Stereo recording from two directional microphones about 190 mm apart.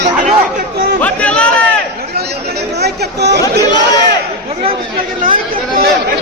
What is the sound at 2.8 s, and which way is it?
Speech, 60° right (ahead or behind).